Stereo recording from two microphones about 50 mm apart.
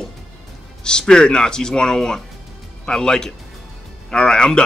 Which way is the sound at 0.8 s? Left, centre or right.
Centre.